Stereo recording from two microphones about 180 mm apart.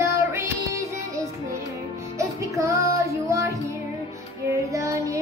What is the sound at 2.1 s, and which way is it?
Music, 15° right (ahead or behind).